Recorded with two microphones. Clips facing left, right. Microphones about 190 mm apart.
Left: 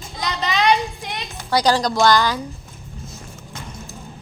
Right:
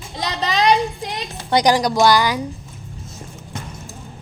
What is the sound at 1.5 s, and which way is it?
Speech, 20° right (ahead or behind).